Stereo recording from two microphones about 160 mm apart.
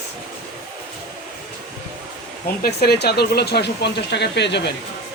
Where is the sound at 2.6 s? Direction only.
80° left.